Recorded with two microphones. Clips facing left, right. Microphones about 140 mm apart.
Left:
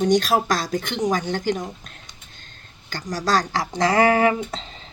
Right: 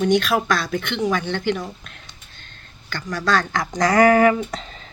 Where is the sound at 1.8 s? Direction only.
40° left (ahead or behind).